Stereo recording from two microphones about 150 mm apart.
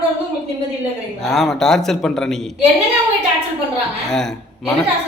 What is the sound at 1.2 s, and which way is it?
A man's voice, centre (ahead or behind).